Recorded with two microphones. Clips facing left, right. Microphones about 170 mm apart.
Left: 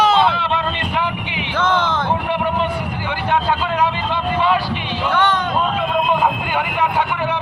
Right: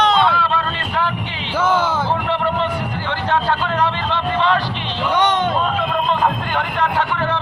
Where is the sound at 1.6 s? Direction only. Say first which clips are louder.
Right 1 dB; 10° right (ahead or behind).